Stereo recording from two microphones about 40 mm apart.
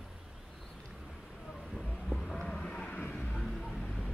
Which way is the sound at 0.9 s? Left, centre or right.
Centre.